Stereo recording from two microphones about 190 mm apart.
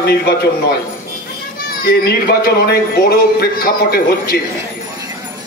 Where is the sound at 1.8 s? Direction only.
55° left (ahead or behind).